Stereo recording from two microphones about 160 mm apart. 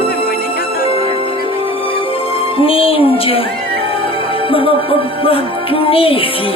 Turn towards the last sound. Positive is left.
turn(degrees=35)  # may be behind; listen again after turning